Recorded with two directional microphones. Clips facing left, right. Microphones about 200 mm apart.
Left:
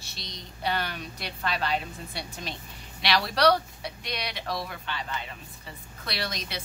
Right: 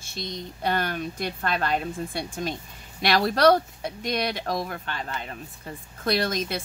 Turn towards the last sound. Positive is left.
turn(degrees=-45)  # may be behind; listen again after turning